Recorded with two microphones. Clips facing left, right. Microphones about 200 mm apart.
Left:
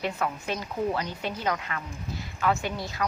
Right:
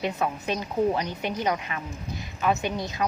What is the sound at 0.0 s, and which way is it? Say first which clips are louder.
A woman's voice: right 2 dB; 20° right (ahead or behind).